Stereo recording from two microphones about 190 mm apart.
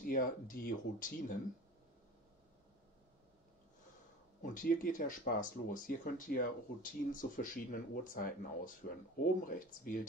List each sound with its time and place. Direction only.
0.0 s speech: 45° left (ahead or behind)
4.4 s speech: 45° left (ahead or behind)